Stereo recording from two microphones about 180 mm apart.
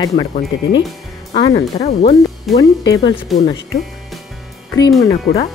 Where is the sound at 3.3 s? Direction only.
Centre (ahead or behind).